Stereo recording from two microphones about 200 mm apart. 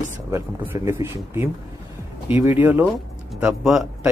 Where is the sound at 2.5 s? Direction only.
10° right (ahead or behind).